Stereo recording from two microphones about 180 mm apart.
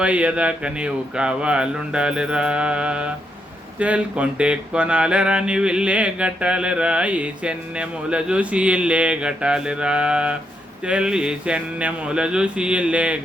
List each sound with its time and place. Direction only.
0.0 s speech: 5° right (ahead or behind)